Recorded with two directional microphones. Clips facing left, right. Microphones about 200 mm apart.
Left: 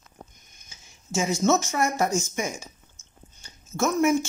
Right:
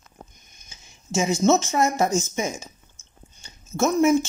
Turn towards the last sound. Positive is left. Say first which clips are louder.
# right 3 dB
turn(degrees=-20)  # may be behind; listen again after turning